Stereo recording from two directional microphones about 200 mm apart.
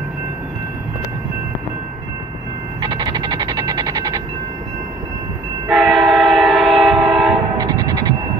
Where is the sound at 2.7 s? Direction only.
20° right (ahead or behind).